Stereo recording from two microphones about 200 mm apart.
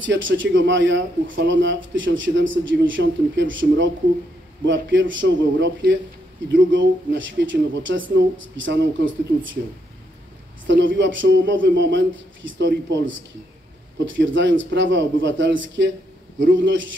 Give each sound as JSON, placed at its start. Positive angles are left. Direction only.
{"t": 0.0, "sound": "a man's voice", "side_deg": -65}
{"t": 10.7, "sound": "a man's voice", "side_deg": -65}
{"t": 14.1, "sound": "a man's voice", "side_deg": -70}